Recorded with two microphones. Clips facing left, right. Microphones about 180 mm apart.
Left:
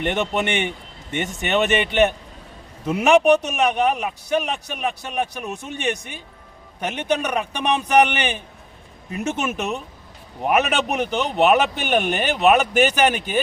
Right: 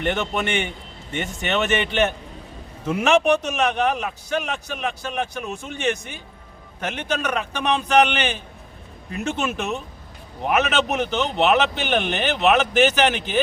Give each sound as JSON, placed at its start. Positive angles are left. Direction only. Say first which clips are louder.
{"t": 0.0, "sound": "a man's voice", "louder": "left 1 dB", "side_deg": 15}